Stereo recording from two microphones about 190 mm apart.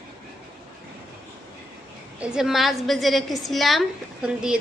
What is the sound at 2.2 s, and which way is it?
A woman's voice, 5° right (ahead or behind).